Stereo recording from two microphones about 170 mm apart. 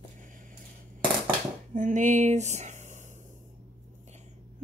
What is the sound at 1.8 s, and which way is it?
Speech, 50° right (ahead or behind).